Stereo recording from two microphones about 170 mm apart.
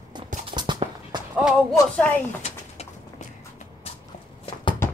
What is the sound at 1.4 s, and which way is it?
Speech, 5° right (ahead or behind).